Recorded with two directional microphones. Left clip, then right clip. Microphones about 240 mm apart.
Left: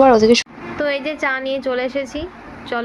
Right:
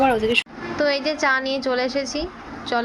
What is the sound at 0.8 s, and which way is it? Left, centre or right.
A woman's voice, centre.